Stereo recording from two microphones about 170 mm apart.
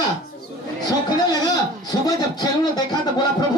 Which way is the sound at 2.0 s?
25° left (ahead or behind).